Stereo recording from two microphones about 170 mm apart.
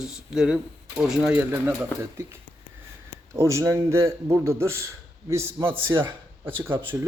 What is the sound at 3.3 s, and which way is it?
A man's voice, 15° right (ahead or behind).